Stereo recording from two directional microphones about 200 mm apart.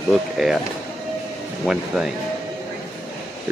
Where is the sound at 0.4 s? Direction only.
Centre (ahead or behind).